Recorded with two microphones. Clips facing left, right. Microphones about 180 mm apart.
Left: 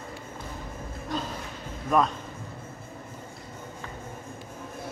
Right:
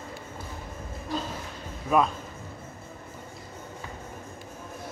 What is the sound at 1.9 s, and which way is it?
Speech, 5° right (ahead or behind).